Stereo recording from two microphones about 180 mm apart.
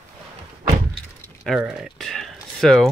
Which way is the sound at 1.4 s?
Centre (ahead or behind).